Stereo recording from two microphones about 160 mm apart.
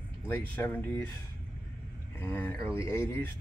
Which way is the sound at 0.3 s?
10° left (ahead or behind).